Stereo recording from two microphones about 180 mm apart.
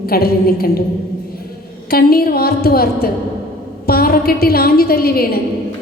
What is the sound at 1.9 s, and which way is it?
A woman's voice, 55° left (ahead or behind).